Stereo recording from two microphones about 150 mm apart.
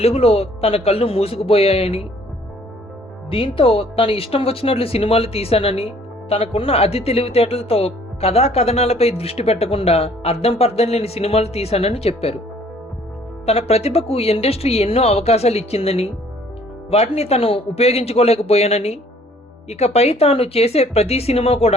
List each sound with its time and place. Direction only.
0.0 s speech: 40° left (ahead or behind)
3.2 s speech: 35° left (ahead or behind)
13.4 s speech: 40° left (ahead or behind)